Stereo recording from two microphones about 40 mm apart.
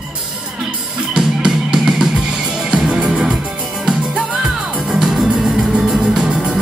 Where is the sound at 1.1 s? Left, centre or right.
Centre.